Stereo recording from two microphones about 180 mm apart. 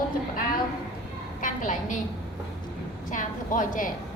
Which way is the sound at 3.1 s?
45° left (ahead or behind).